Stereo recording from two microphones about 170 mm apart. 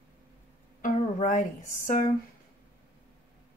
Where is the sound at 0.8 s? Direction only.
45° left (ahead or behind).